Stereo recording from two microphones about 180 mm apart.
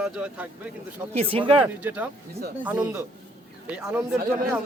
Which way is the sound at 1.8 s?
10° right (ahead or behind).